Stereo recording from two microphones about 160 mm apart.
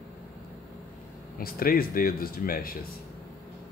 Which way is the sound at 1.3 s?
65° left (ahead or behind).